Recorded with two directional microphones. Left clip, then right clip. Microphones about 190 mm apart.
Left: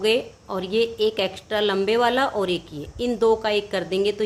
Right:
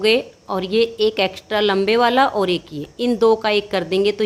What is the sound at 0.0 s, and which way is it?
A woman's voice, 25° right (ahead or behind).